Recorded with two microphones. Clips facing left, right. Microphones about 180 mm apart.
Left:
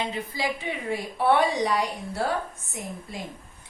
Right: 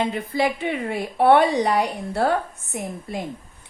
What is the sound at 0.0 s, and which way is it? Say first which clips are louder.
A woman's voice: right 7 dB; 55° right (ahead or behind).